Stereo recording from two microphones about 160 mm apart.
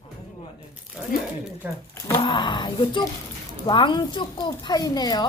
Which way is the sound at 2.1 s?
30° left (ahead or behind).